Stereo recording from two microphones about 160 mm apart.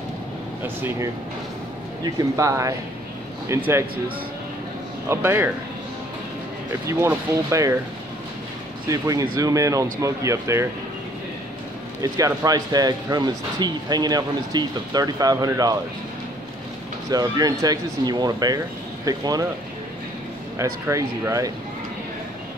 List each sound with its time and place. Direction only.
2.0 s speech: 20° right (ahead or behind)
5.0 s speech: 15° right (ahead or behind)
6.9 s speech: 20° right (ahead or behind)
8.8 s speech: 20° right (ahead or behind)
12.0 s speech: 20° right (ahead or behind)
17.1 s speech: 25° right (ahead or behind)
20.5 s speech: 20° right (ahead or behind)